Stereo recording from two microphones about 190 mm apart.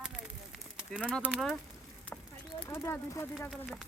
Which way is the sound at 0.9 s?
5° right (ahead or behind).